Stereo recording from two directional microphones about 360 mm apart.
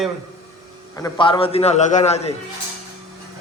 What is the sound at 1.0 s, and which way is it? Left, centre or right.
A man's voice, centre.